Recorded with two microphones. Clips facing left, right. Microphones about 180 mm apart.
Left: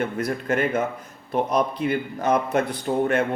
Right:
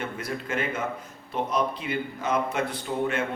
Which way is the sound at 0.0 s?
45° left (ahead or behind).